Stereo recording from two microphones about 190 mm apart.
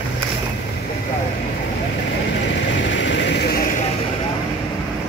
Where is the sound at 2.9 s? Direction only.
70° left (ahead or behind).